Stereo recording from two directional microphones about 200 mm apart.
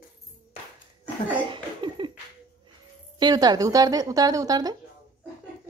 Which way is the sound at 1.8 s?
25° right (ahead or behind).